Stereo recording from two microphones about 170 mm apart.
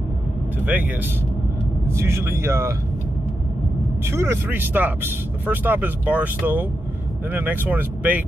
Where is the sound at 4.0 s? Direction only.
15° right (ahead or behind).